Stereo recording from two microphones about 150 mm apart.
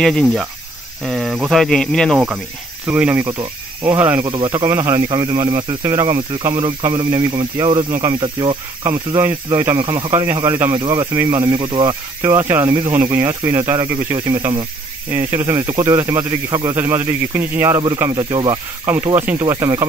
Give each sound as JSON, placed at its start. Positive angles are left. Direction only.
{"t": 0.0, "sound": "speech", "side_deg": 5}
{"t": 2.1, "sound": "a man's voice", "side_deg": -10}
{"t": 3.3, "sound": "speech", "side_deg": -25}
{"t": 4.0, "sound": "a man's voice", "side_deg": -10}
{"t": 4.3, "sound": "speech", "side_deg": -30}
{"t": 4.6, "sound": "a man's voice", "side_deg": -15}
{"t": 5.0, "sound": "speech", "side_deg": -30}
{"t": 8.8, "sound": "a man's voice", "side_deg": -15}
{"t": 9.8, "sound": "speech", "side_deg": -30}
{"t": 10.3, "sound": "speech", "side_deg": -20}
{"t": 10.8, "sound": "speech", "side_deg": -30}
{"t": 15.0, "sound": "a man's voice", "side_deg": -15}
{"t": 18.1, "sound": "speech", "side_deg": -30}